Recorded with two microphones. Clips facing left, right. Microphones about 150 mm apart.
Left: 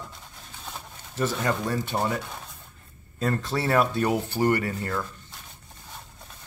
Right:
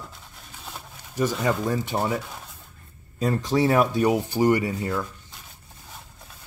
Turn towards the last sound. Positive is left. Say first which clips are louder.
# right 3 dB
turn(degrees=-10)  # may be behind; listen again after turning